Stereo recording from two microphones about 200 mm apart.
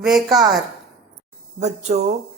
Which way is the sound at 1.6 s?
35° right (ahead or behind).